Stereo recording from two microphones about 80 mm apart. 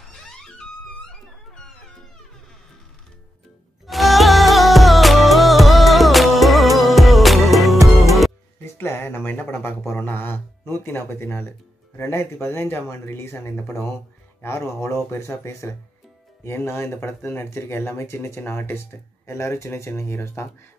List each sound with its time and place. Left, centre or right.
0.1 s music: centre
3.8 s music: centre
8.6 s a sound: left
10.7 s speech: left